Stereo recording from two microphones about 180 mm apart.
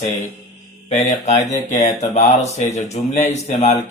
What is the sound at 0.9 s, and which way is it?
Speech, 40° left (ahead or behind).